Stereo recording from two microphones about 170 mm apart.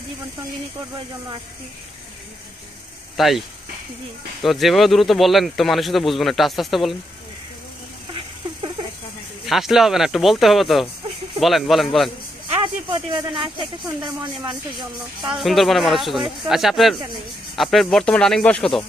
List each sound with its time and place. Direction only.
3.2 s speech: centre (ahead or behind)
9.5 s speech: centre (ahead or behind)
12.4 s speech: 30° right (ahead or behind)
15.2 s speech: centre (ahead or behind)